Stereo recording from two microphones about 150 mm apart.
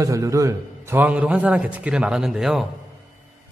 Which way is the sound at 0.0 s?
20° right (ahead or behind).